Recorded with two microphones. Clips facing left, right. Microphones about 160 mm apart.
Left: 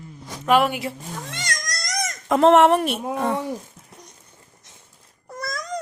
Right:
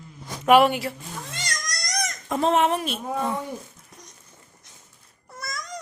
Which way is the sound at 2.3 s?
80° left.